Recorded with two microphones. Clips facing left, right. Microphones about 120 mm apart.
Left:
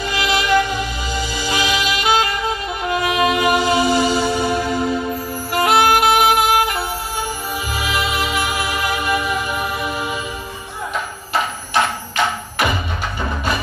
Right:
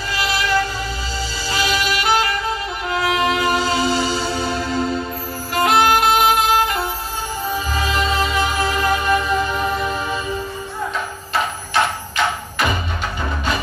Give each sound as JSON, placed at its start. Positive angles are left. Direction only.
{"t": 0.0, "sound": "music", "side_deg": 15}